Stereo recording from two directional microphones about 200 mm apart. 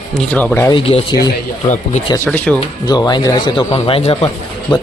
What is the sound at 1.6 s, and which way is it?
Speech, 40° left (ahead or behind).